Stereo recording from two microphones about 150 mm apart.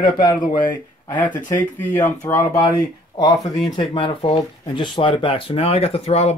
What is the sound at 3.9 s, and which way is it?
Speech, 35° left (ahead or behind).